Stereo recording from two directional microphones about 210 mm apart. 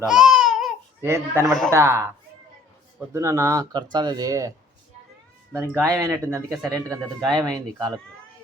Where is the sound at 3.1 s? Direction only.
15° right (ahead or behind).